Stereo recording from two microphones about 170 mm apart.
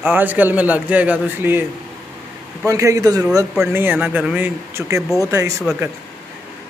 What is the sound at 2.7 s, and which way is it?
A man's voice, 20° right (ahead or behind).